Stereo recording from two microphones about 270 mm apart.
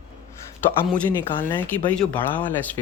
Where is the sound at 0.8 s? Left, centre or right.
Centre.